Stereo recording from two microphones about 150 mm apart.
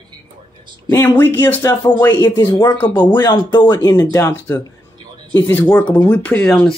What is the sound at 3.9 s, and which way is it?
Speech, 20° left (ahead or behind).